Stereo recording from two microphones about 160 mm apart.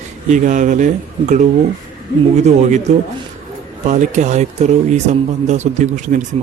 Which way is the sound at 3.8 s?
50° right (ahead or behind).